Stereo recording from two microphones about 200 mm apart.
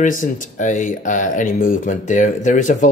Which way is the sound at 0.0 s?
40° left (ahead or behind).